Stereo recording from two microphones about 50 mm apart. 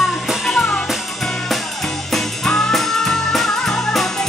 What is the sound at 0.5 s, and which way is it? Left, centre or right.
Music, centre.